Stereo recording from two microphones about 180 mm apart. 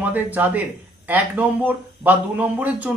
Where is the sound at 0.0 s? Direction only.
10° right (ahead or behind).